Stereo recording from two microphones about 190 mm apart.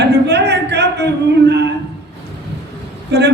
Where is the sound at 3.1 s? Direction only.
60° right (ahead or behind).